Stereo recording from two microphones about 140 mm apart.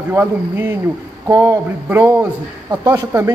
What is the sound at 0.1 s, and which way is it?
A man's voice, 15° right (ahead or behind).